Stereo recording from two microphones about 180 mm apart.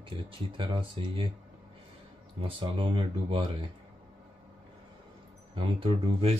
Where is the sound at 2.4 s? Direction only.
30° right (ahead or behind).